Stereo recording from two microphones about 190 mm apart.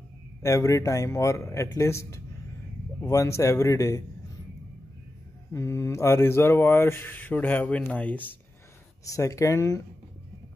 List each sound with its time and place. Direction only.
0.4 s speech: 15° left (ahead or behind)
5.5 s speech: 15° left (ahead or behind)